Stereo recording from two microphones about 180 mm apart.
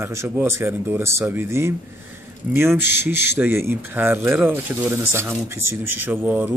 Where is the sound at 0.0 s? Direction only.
15° right (ahead or behind).